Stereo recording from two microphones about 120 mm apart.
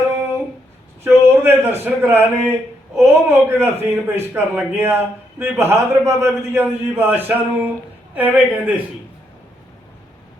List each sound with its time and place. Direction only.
1.0 s a man's voice: 20° right (ahead or behind)